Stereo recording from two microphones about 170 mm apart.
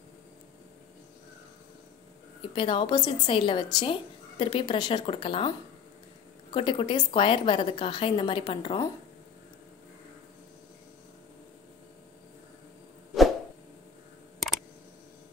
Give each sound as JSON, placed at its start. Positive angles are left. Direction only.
{"t": 2.5, "sound": "a woman's voice", "side_deg": 30}
{"t": 6.5, "sound": "a woman's voice", "side_deg": 30}